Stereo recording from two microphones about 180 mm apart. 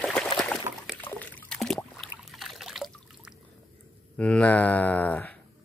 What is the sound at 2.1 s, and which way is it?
Trickle, centre (ahead or behind).